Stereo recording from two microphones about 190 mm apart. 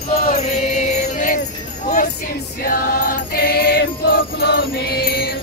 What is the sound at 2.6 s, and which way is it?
Music, 45° left (ahead or behind).